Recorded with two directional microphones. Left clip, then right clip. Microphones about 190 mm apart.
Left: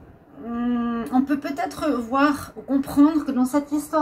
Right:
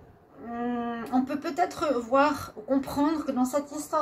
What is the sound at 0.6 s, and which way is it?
Speech, 40° right (ahead or behind).